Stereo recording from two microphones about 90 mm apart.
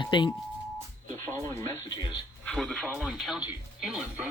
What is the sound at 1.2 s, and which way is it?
Music, 30° left (ahead or behind).